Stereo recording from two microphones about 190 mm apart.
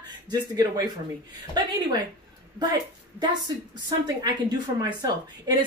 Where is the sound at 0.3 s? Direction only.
20° right (ahead or behind).